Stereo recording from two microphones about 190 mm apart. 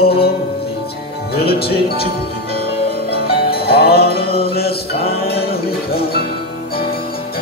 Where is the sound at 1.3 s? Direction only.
55° left (ahead or behind).